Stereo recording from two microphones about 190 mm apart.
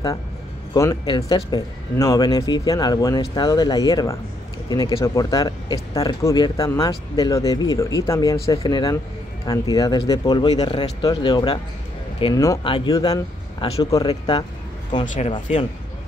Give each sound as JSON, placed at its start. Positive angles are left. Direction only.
{"t": 0.7, "sound": "speech", "side_deg": 20}